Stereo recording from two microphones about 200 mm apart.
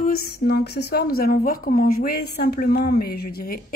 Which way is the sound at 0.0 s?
50° left (ahead or behind).